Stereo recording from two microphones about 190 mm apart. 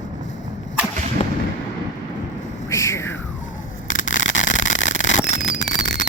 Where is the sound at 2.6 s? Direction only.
15° left (ahead or behind).